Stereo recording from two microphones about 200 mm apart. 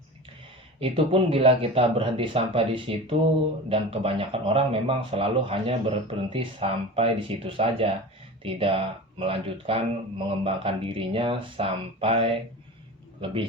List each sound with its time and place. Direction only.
0.8 s a man's voice: 25° right (ahead or behind)